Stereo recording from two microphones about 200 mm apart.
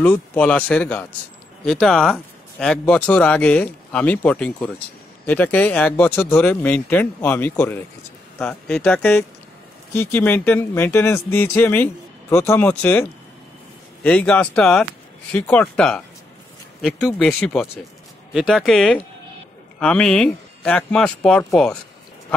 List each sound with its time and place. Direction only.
0.0 s speech: 10° left (ahead or behind)
14.0 s speech: 5° left (ahead or behind)